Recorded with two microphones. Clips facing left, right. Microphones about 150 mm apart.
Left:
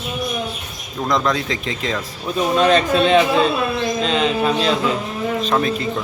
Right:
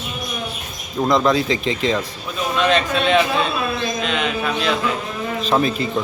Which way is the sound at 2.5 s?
40° left (ahead or behind).